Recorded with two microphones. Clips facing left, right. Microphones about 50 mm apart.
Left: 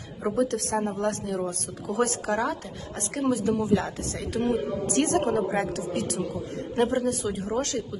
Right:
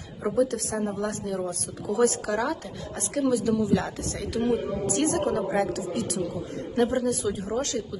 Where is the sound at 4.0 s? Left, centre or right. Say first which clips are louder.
Even; left.